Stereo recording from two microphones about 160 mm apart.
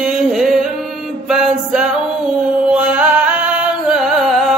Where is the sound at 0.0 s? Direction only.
5° right (ahead or behind).